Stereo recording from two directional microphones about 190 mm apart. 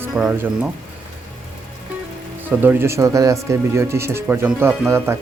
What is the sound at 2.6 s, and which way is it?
Speech, 10° right (ahead or behind).